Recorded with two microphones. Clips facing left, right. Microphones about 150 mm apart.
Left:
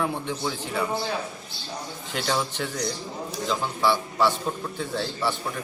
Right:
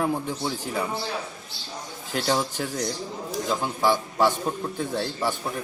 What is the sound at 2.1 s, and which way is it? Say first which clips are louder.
Speech: right 2 dB; 40° right (ahead or behind).